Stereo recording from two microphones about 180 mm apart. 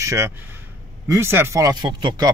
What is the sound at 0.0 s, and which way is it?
A man's voice, 15° right (ahead or behind).